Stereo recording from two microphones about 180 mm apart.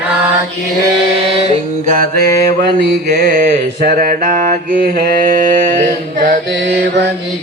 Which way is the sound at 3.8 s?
55° right (ahead or behind).